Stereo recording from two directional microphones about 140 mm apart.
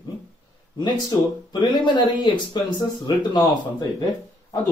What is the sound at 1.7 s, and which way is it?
Speech, 35° left (ahead or behind).